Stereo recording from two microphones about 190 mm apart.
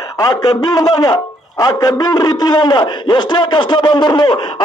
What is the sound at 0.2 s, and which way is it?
A man's voice, 20° left (ahead or behind).